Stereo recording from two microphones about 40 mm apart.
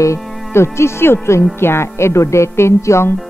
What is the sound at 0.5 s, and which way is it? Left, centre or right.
Speech, left.